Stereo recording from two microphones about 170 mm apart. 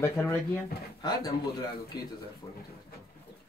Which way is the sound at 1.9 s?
25° left (ahead or behind).